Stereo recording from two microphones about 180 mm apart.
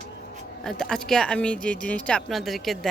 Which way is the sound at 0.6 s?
5° left (ahead or behind).